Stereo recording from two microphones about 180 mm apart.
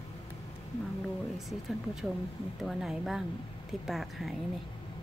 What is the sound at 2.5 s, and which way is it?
A woman's voice, centre (ahead or behind).